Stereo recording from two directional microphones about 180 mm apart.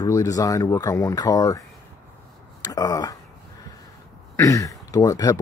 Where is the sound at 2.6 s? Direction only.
20° left (ahead or behind).